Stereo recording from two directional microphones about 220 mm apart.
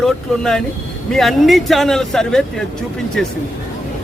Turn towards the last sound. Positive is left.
turn(degrees=5)  # may be behind; listen again after turning